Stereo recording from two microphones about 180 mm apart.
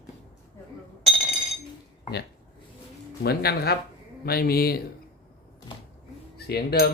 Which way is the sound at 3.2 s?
60° left (ahead or behind).